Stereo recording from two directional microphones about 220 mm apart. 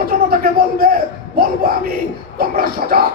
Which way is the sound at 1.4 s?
40° right (ahead or behind).